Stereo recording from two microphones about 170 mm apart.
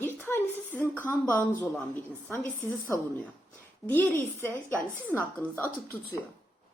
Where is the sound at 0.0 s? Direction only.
15° left (ahead or behind).